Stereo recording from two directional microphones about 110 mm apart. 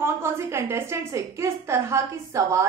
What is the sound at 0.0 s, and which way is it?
A woman's voice, 25° right (ahead or behind).